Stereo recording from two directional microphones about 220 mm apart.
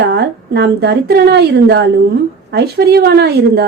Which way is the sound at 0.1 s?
50° right (ahead or behind).